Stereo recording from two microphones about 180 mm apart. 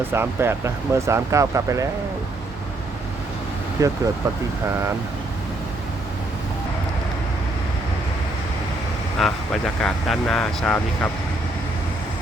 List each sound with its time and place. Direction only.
0.1 s speech: 15° right (ahead or behind)
3.8 s speech: 20° right (ahead or behind)
9.2 s speech: centre (ahead or behind)